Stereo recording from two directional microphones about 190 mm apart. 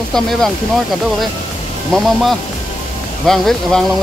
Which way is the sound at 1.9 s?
Centre (ahead or behind).